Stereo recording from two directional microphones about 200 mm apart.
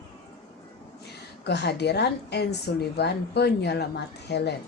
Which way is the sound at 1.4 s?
55° left (ahead or behind).